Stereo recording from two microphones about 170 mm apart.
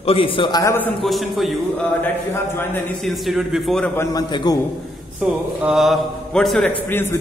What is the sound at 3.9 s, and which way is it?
Speech, 20° left (ahead or behind).